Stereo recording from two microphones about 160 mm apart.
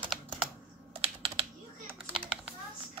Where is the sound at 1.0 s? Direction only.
35° right (ahead or behind).